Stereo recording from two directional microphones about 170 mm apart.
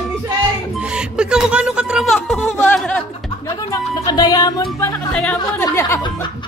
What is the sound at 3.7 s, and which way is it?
Speech, 20° left (ahead or behind).